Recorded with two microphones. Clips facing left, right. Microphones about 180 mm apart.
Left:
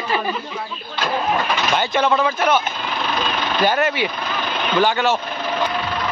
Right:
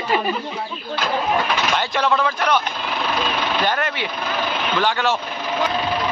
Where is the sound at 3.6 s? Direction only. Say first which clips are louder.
Left 4 dB; 5° left (ahead or behind).